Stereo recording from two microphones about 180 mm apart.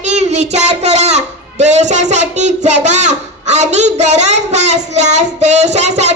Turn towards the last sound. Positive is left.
turn(degrees=-40)  # may be behind; listen again after turning